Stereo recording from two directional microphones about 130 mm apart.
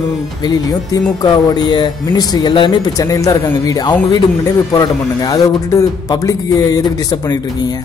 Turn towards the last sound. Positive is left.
turn(degrees=30)  # may be behind; listen again after turning